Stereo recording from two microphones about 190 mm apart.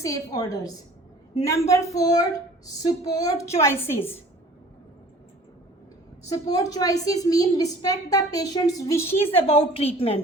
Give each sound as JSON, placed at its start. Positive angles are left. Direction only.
{"t": 0.0, "sound": "a woman's voice", "side_deg": 20}
{"t": 6.2, "sound": "a woman's voice", "side_deg": 20}
{"t": 9.2, "sound": "a woman's voice", "side_deg": 30}